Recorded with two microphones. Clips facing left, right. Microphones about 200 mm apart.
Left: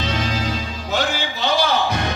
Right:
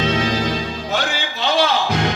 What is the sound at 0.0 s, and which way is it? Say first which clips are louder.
Music: right 5 dB; 60° right (ahead or behind).